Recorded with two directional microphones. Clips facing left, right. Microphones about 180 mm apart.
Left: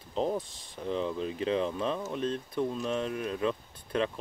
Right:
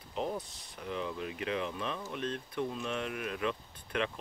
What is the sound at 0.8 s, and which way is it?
Speech, 30° left (ahead or behind).